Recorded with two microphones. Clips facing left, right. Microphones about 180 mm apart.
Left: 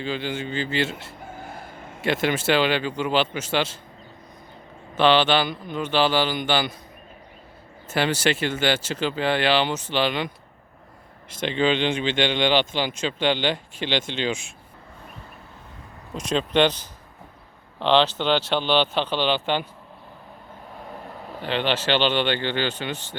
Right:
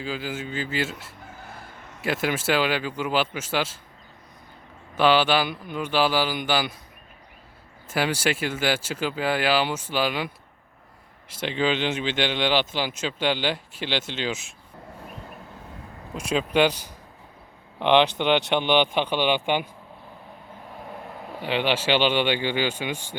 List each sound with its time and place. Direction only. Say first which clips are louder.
0.0 s speech: left 3 dB; 5° right (ahead or behind)
2.2 s speech: left 2 dB; 5° right (ahead or behind)
4.9 s speech: left 1 dB; 10° right (ahead or behind)
7.9 s speech: left 2 dB; 10° right (ahead or behind)
16.1 s speech: left 1 dB; 10° right (ahead or behind)
21.3 s speech: even; 10° right (ahead or behind)